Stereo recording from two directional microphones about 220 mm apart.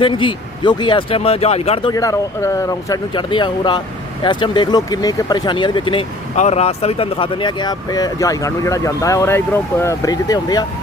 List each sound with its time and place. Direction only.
0.0 s speech: 25° left (ahead or behind)